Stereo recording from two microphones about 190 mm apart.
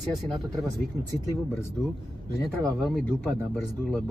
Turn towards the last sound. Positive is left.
turn(degrees=0)  # may be behind; listen again after turning